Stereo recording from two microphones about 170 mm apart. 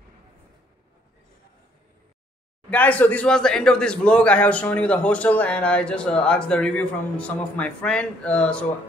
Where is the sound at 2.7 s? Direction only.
10° left (ahead or behind).